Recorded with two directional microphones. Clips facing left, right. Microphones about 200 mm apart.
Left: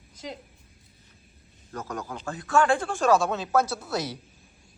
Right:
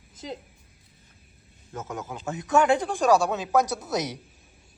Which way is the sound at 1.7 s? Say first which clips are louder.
Even; 20° right (ahead or behind).